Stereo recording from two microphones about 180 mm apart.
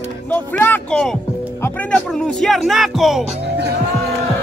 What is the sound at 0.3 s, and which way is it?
Speech, 10° left (ahead or behind).